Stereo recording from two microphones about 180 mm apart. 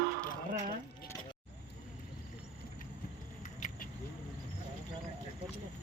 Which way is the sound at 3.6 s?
45° left (ahead or behind).